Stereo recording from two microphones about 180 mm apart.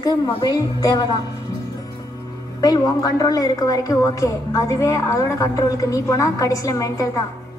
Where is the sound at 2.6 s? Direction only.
20° left (ahead or behind).